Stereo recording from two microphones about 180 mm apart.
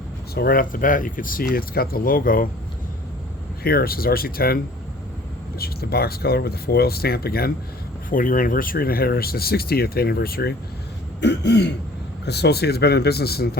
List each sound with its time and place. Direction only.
0.3 s speech: 55° left (ahead or behind)
3.6 s speech: 60° left (ahead or behind)
11.2 s throat clearing: 75° left (ahead or behind)
12.2 s speech: 65° left (ahead or behind)